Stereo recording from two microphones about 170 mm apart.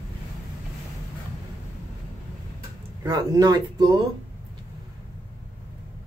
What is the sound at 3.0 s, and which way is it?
Speech, 20° right (ahead or behind).